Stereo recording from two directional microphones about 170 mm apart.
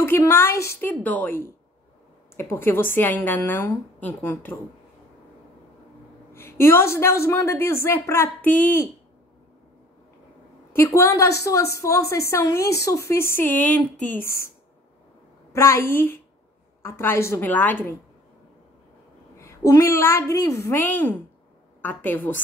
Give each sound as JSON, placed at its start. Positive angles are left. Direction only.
{"t": 0.0, "sound": "a woman's voice", "side_deg": 15}
{"t": 6.3, "sound": "a woman's voice", "side_deg": 15}
{"t": 10.7, "sound": "a woman's voice", "side_deg": 15}
{"t": 15.5, "sound": "a woman's voice", "side_deg": 15}
{"t": 19.3, "sound": "a woman's voice", "side_deg": 20}